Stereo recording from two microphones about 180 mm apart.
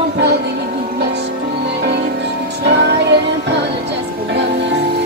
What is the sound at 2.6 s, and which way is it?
Music, 70° right (ahead or behind).